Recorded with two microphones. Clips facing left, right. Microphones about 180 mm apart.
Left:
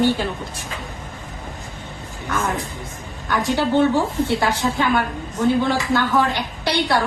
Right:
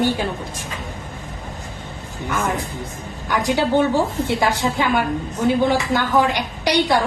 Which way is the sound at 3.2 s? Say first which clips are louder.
Right 1 dB; 15° right (ahead or behind).